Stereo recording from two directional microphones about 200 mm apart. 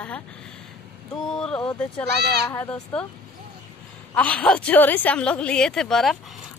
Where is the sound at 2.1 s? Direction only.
55° right (ahead or behind).